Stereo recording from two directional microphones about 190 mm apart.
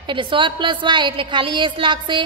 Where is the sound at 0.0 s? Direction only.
25° right (ahead or behind).